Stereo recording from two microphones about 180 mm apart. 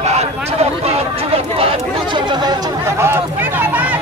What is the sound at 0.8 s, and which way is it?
Chatter, 35° right (ahead or behind).